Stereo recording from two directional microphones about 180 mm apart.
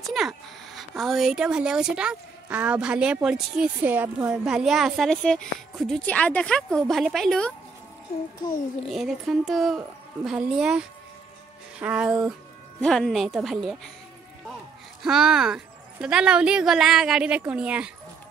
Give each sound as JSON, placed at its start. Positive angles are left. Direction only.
{"t": 0.0, "sound": "speech", "side_deg": 0}
{"t": 8.8, "sound": "speech", "side_deg": 0}
{"t": 15.0, "sound": "speech", "side_deg": -5}